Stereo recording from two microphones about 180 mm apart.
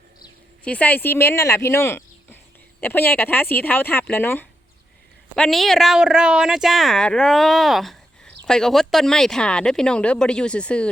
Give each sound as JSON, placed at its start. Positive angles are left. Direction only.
{"t": 0.6, "sound": "speech", "side_deg": 10}
{"t": 5.4, "sound": "speech", "side_deg": 0}